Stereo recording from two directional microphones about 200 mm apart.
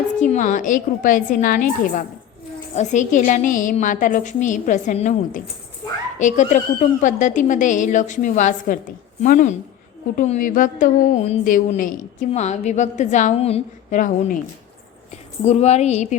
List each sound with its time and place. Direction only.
0.2 s speech: 40° left (ahead or behind)
15.4 s speech: 30° left (ahead or behind)